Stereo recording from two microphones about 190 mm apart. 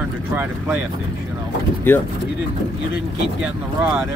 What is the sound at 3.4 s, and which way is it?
Speech, 10° right (ahead or behind).